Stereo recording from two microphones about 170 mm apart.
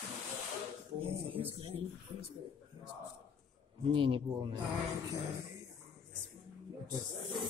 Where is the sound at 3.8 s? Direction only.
30° right (ahead or behind).